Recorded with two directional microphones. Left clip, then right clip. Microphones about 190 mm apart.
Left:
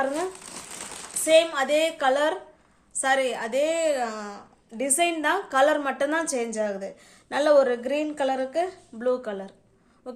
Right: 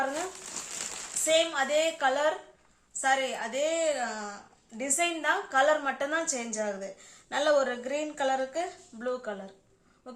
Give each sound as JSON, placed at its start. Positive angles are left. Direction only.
{"t": 1.2, "sound": "a woman's voice", "side_deg": 50}